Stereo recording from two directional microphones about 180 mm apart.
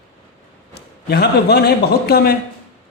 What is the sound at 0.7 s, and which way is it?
A man's voice, 65° left (ahead or behind).